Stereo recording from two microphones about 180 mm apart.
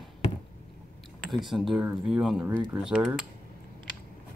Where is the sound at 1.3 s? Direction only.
Centre (ahead or behind).